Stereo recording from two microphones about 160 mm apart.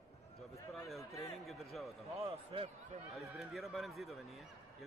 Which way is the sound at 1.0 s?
20° left (ahead or behind).